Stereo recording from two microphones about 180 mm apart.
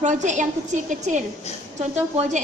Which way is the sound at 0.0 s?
45° right (ahead or behind).